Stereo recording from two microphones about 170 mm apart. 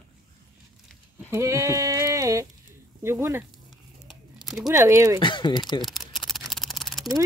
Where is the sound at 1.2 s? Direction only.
15° right (ahead or behind).